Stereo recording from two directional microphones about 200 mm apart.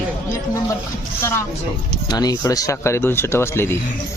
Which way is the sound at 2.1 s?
20° left (ahead or behind).